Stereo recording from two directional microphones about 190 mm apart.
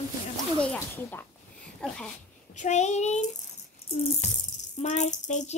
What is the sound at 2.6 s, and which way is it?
Child singing, 40° left (ahead or behind).